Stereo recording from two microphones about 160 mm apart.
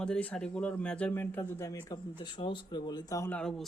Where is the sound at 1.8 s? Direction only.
25° left (ahead or behind).